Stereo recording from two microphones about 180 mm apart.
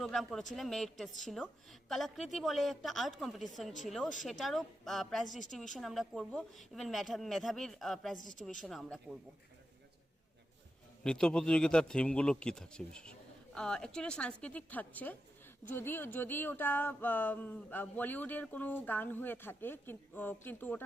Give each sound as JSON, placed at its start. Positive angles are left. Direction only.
{"t": 0.0, "sound": "a man's voice", "side_deg": 0}
{"t": 11.0, "sound": "a man's voice", "side_deg": 5}